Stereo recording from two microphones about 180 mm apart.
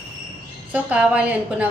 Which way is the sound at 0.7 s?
10° right (ahead or behind).